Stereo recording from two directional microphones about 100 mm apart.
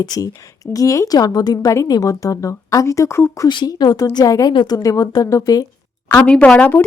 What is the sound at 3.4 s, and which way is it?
A woman's voice, 45° left (ahead or behind).